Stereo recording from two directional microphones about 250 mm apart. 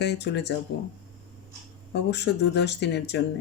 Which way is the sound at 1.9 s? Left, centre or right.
Left.